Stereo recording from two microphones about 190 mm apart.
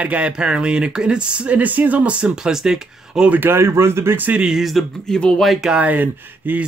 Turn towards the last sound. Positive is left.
turn(degrees=-10)  # may be behind; listen again after turning